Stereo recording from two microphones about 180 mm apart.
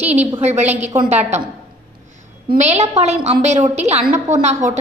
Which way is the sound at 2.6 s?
40° right (ahead or behind).